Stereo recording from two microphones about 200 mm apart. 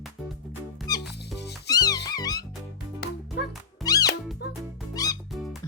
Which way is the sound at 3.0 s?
50° left (ahead or behind).